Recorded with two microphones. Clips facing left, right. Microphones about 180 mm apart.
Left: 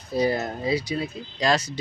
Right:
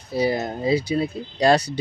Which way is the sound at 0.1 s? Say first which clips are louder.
Right 1 dB; 5° right (ahead or behind).